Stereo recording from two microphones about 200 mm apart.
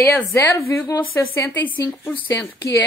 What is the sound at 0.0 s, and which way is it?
A woman's voice, 15° left (ahead or behind).